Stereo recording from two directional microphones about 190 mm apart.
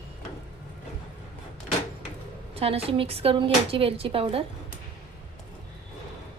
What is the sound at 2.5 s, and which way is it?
Speech, 30° right (ahead or behind).